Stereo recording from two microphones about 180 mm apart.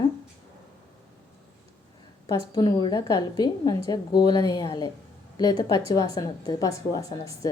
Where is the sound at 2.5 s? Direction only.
25° left (ahead or behind).